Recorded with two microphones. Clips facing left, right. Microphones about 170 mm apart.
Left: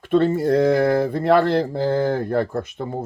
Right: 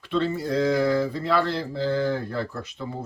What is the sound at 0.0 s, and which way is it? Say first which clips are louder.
Speech: left 8 dB; 50° left (ahead or behind).